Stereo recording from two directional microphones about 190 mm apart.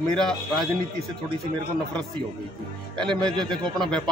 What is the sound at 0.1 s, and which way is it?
Speech, 5° left (ahead or behind).